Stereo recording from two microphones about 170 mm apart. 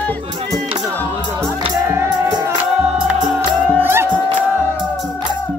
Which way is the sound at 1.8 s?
15° right (ahead or behind).